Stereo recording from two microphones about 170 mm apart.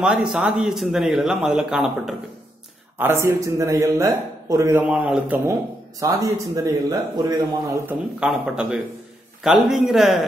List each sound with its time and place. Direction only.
0.0 s a man's voice: 5° right (ahead or behind)
3.0 s a man's voice: 15° right (ahead or behind)